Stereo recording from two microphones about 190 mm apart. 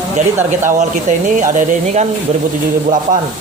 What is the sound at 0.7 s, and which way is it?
Speech, 40° right (ahead or behind).